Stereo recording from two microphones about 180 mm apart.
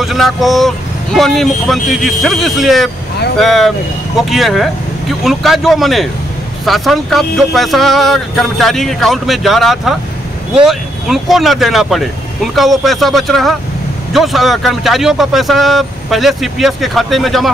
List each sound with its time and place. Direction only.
0.0 s speech: centre (ahead or behind)